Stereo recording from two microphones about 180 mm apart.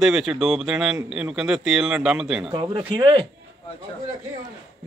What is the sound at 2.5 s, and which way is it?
Speech, 20° right (ahead or behind).